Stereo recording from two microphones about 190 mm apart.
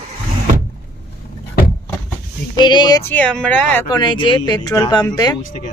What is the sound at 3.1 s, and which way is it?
Speech, 5° left (ahead or behind).